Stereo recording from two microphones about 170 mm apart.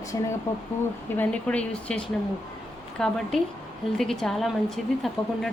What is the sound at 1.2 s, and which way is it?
Speech, 5° left (ahead or behind).